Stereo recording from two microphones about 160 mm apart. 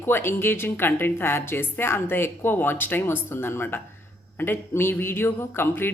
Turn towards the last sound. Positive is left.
turn(degrees=15)  # may be behind; listen again after turning